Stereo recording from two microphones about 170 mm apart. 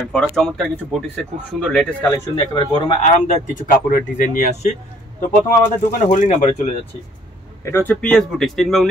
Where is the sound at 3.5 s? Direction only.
50° left (ahead or behind).